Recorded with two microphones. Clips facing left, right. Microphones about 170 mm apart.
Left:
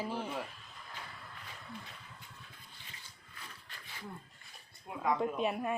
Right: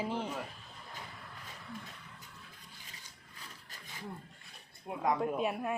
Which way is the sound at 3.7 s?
40° right (ahead or behind).